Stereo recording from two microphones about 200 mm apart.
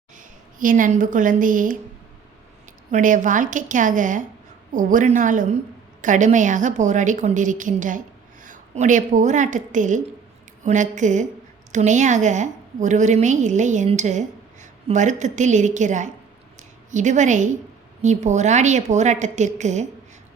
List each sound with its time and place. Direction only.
0.2 s speech: 40° right (ahead or behind)
2.9 s a woman's voice: 40° right (ahead or behind)